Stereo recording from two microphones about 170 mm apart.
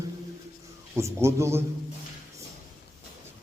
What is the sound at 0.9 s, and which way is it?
Speech, 15° right (ahead or behind).